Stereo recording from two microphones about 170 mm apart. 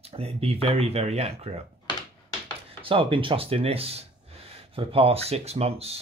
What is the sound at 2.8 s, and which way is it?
Speech, 30° right (ahead or behind).